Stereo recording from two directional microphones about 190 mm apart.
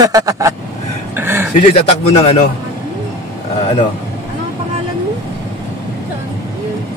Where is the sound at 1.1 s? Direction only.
10° right (ahead or behind).